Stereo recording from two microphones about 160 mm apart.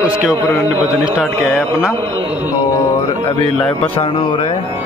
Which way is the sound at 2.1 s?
30° right (ahead or behind).